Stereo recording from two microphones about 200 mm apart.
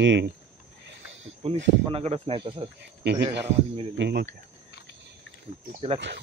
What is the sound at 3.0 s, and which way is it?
Speech, 55° right (ahead or behind).